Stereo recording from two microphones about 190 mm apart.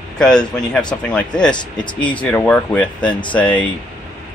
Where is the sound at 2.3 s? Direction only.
5° left (ahead or behind).